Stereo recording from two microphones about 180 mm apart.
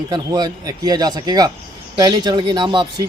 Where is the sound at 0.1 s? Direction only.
25° right (ahead or behind).